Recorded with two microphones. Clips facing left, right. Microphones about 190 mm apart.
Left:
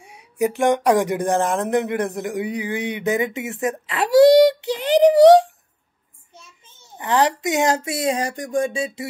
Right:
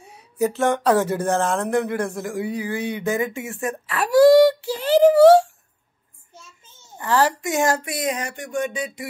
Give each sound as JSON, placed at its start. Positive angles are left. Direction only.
{"t": 0.0, "sound": "speech", "side_deg": 15}
{"t": 7.0, "sound": "speech", "side_deg": 20}